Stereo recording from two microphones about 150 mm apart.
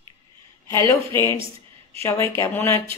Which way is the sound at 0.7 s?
20° left (ahead or behind).